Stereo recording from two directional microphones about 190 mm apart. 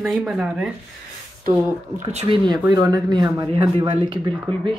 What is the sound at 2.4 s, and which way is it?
Speech, 20° right (ahead or behind).